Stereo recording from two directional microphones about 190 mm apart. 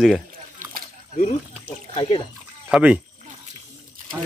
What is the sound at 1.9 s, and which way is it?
Speech, 30° left (ahead or behind).